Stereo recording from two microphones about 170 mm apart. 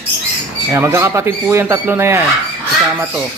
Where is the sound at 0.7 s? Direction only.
15° right (ahead or behind).